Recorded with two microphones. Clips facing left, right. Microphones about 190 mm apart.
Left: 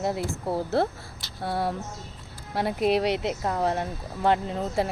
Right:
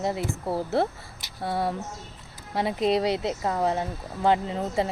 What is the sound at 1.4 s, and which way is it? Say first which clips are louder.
Speech: right 1 dB; centre (ahead or behind).